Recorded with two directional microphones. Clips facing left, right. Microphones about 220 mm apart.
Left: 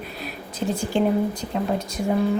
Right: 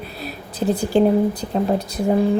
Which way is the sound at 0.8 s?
35° right (ahead or behind).